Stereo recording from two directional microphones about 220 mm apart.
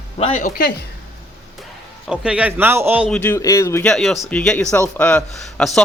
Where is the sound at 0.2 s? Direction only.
30° left (ahead or behind).